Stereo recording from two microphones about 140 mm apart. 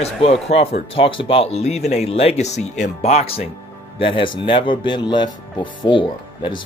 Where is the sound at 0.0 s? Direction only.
45° left (ahead or behind).